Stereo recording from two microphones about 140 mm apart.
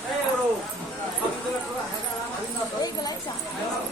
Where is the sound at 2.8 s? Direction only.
25° left (ahead or behind).